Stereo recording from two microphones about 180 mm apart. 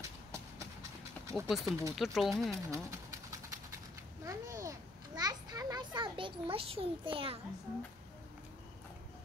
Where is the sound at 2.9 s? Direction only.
15° right (ahead or behind).